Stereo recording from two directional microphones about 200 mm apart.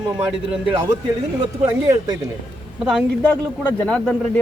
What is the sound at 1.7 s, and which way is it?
Speech, 20° right (ahead or behind).